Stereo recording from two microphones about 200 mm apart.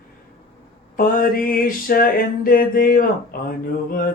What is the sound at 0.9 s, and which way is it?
Music, 45° left (ahead or behind).